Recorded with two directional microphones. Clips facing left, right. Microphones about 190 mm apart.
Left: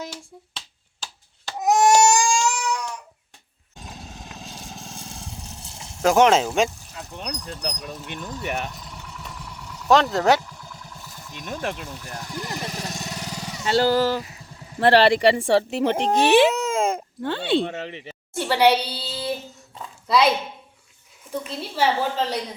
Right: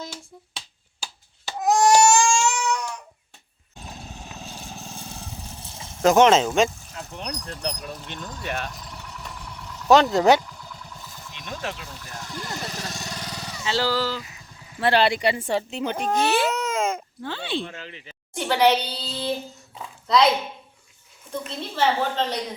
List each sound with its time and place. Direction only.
1.5 s baby cry: 20° left (ahead or behind)
3.8 s vehicle: 5° right (ahead or behind)
6.1 s speech: 10° left (ahead or behind)
7.9 s a woman's voice: 10° left (ahead or behind)
8.7 s vehicle: centre (ahead or behind)
11.3 s speech: 45° left (ahead or behind)
12.0 s motorcycle: 20° left (ahead or behind)
13.2 s vehicle: 20° left (ahead or behind)
13.7 s speech: 50° left (ahead or behind)
14.8 s speech: 65° left (ahead or behind)
15.8 s speech: 20° left (ahead or behind)
17.2 s speech: 60° left (ahead or behind)
18.3 s a child's voice: 5° left (ahead or behind)
21.4 s a woman's voice: 10° left (ahead or behind)